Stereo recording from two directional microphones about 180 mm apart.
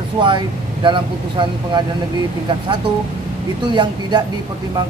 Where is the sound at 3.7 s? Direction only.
25° right (ahead or behind).